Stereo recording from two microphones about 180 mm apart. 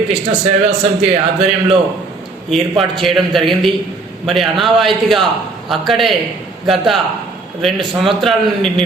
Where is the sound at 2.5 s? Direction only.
Centre (ahead or behind).